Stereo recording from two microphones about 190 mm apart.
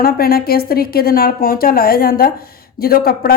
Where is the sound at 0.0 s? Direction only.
55° left (ahead or behind).